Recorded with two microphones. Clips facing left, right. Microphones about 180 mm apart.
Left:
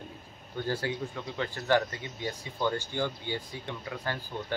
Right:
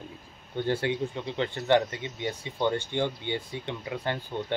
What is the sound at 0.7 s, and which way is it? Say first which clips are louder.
Speech: right 4 dB; 25° right (ahead or behind).